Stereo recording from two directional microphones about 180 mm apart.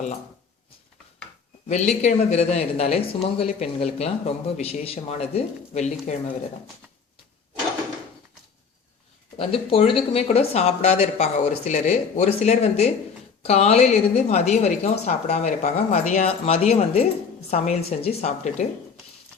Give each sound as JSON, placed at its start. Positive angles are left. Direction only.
{"t": 1.6, "sound": "speech", "side_deg": 40}
{"t": 9.4, "sound": "speech", "side_deg": 30}